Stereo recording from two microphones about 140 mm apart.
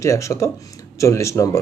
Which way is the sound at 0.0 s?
20° left (ahead or behind).